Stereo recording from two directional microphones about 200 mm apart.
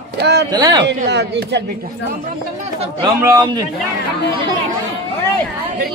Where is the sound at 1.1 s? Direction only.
55° right (ahead or behind).